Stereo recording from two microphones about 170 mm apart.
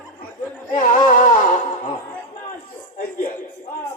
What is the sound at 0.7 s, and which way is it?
Speech, 45° left (ahead or behind).